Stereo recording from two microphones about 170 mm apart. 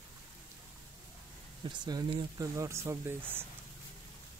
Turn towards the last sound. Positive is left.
turn(degrees=-15)  # may be behind; listen again after turning